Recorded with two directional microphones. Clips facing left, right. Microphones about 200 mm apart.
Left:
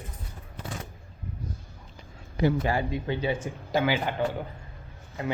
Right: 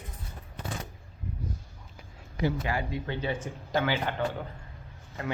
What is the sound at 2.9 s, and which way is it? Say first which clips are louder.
Speech: left 4 dB; 15° left (ahead or behind).